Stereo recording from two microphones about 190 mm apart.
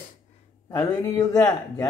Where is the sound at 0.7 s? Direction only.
15° left (ahead or behind).